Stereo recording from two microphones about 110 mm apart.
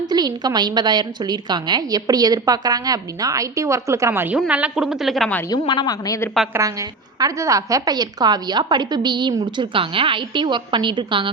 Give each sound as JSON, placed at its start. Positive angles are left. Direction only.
{"t": 0.1, "sound": "a woman's voice", "side_deg": -40}
{"t": 5.5, "sound": "speech", "side_deg": 40}
{"t": 6.5, "sound": "a woman's voice", "side_deg": -30}
{"t": 9.7, "sound": "a woman's voice", "side_deg": -50}